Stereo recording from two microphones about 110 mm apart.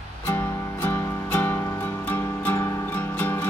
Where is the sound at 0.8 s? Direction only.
20° left (ahead or behind).